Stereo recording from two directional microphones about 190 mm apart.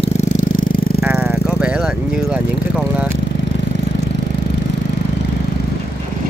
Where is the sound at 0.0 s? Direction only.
40° left (ahead or behind).